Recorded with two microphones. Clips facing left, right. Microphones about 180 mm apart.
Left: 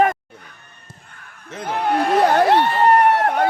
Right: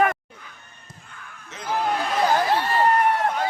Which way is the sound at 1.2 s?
60° left (ahead or behind).